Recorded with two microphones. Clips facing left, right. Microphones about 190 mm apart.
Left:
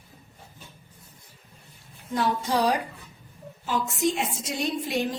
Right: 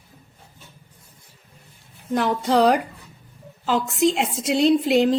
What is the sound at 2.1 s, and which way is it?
Speech, 80° right.